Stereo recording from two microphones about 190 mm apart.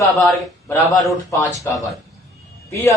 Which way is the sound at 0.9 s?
15° left (ahead or behind).